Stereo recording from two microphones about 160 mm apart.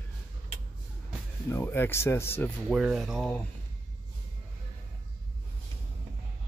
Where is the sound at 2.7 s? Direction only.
Centre (ahead or behind).